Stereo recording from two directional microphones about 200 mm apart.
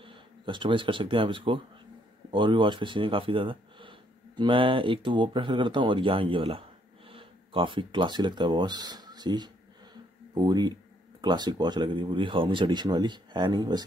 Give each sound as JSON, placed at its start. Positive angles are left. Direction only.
{"t": 0.0, "sound": "speech", "side_deg": -25}